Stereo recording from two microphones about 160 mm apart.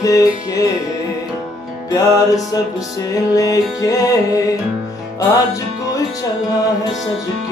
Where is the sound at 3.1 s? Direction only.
20° left (ahead or behind).